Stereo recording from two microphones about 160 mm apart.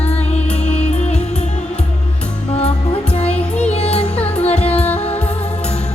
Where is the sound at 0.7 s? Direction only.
10° left (ahead or behind).